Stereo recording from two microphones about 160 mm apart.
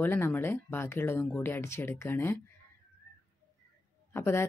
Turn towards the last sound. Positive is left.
turn(degrees=15)  # may be behind; listen again after turning